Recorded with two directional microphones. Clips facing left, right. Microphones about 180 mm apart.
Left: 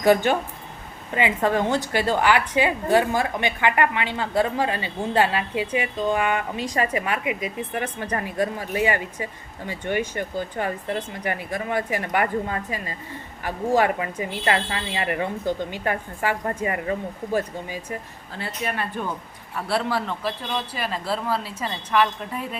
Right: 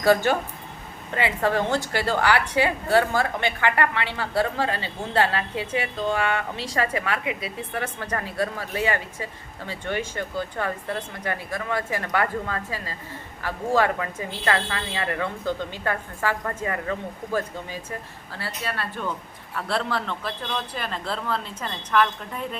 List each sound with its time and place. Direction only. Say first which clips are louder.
0.0 s a woman's voice: left 1 dB; 15° left (ahead or behind)
18.3 s a woman's voice: left 3 dB; 20° left (ahead or behind)